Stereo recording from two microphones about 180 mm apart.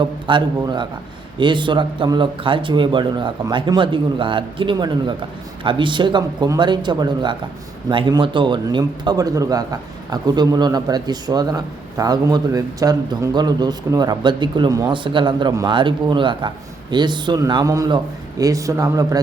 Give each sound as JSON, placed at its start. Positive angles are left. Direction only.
{"t": 0.0, "sound": "speech", "side_deg": -25}